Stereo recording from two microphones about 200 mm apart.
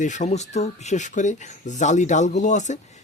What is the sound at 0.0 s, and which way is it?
Speech, 35° left (ahead or behind).